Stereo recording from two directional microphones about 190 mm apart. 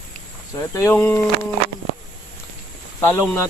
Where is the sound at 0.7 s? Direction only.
15° left (ahead or behind).